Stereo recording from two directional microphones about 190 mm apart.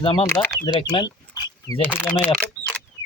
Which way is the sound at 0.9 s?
20° left (ahead or behind).